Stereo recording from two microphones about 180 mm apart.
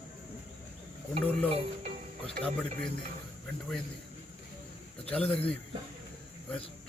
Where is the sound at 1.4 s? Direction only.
35° right (ahead or behind).